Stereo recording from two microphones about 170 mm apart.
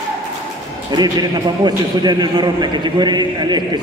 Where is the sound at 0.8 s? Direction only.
25° right (ahead or behind).